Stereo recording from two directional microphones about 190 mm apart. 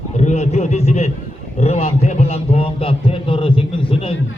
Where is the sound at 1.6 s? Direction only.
35° left (ahead or behind).